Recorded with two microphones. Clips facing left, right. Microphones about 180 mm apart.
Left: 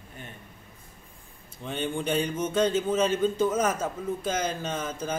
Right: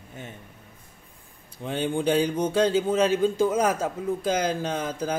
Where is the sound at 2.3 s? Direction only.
35° right (ahead or behind).